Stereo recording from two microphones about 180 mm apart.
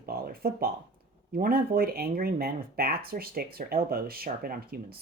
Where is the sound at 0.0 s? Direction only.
55° right (ahead or behind).